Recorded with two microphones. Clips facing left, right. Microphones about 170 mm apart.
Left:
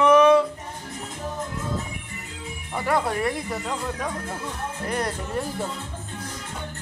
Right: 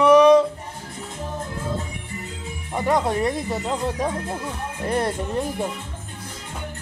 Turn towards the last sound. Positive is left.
turn(degrees=-25)  # may be behind; listen again after turning